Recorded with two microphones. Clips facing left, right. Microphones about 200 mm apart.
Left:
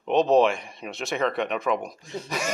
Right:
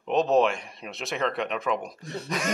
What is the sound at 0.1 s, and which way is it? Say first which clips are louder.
Speech: left 3 dB; centre (ahead or behind).